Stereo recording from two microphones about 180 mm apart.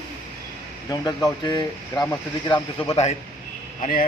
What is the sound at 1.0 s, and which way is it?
Speech, 20° left (ahead or behind).